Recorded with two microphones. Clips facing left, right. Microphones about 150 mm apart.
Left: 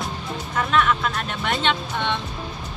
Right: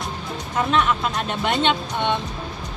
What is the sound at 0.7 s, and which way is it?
Speech, 25° right (ahead or behind).